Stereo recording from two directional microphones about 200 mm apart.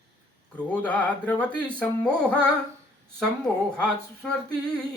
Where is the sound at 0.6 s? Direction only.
5° left (ahead or behind).